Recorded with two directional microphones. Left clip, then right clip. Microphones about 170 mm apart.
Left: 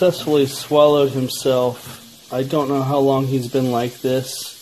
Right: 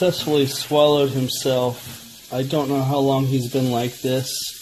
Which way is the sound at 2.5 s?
5° left (ahead or behind).